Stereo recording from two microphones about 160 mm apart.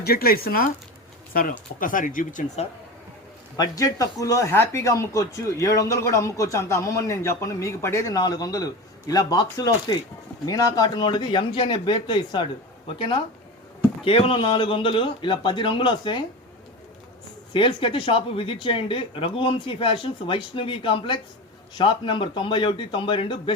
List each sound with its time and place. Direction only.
0.0 s speech: 75° left (ahead or behind); by 2.4 s 55° left (ahead or behind)
3.6 s speech: 20° left (ahead or behind)
17.5 s speech: 30° left (ahead or behind)